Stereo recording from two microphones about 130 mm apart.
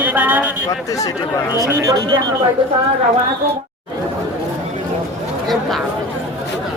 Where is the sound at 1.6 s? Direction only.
30° right (ahead or behind).